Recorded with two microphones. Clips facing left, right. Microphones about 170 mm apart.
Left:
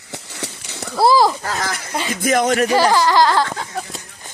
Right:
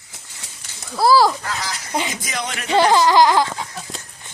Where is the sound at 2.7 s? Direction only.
20° right (ahead or behind).